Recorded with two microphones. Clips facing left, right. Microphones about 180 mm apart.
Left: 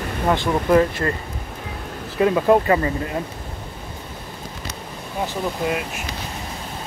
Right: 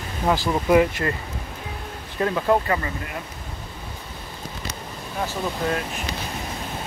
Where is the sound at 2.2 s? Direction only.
15° left (ahead or behind).